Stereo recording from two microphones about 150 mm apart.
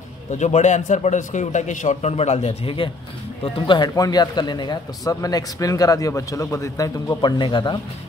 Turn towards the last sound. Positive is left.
turn(degrees=30)  # may be behind; listen again after turning